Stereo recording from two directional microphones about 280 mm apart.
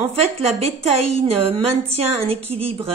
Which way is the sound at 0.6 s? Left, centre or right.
Right.